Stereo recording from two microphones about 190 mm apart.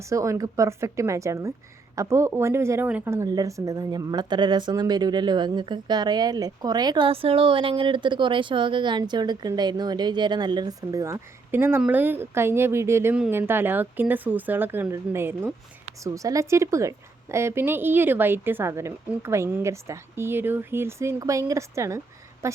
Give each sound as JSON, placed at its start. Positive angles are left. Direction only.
{"t": 0.0, "sound": "a woman's voice", "side_deg": -15}